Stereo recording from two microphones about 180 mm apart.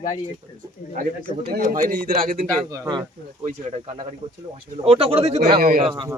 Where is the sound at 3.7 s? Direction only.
35° right (ahead or behind).